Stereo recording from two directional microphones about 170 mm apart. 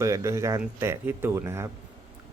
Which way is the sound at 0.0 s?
15° right (ahead or behind).